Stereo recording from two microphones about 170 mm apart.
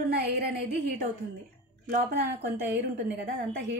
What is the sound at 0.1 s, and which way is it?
Speech, 70° right (ahead or behind).